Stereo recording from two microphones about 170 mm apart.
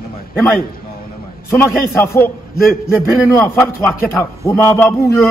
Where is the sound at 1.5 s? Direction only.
15° left (ahead or behind).